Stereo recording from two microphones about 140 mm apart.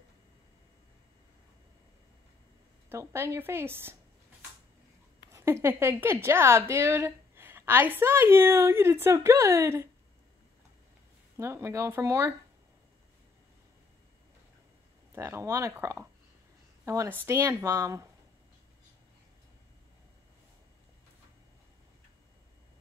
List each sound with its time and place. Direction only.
2.9 s a woman's voice: 20° right (ahead or behind)
5.3 s a woman's voice: 20° right (ahead or behind)
11.3 s speech: 20° right (ahead or behind)
15.1 s speech: 20° right (ahead or behind)